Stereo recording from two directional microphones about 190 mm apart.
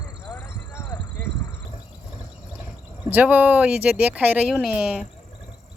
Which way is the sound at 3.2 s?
10° right (ahead or behind).